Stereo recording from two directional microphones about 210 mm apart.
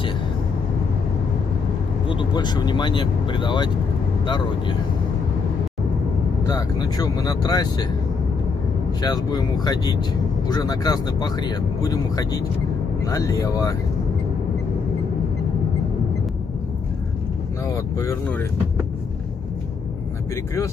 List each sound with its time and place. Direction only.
2.0 s speech: 20° left (ahead or behind)
6.4 s speech: 20° left (ahead or behind)
9.0 s speech: 20° left (ahead or behind)
17.6 s vehicle: 15° left (ahead or behind)